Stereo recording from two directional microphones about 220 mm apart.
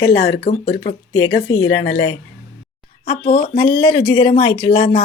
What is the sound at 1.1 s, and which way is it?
Speech, 60° left (ahead or behind).